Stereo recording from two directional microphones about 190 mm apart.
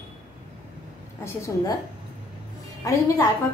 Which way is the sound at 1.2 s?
20° left (ahead or behind).